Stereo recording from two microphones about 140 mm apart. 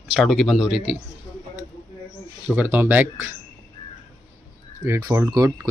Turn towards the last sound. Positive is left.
turn(degrees=-25)  # may be behind; listen again after turning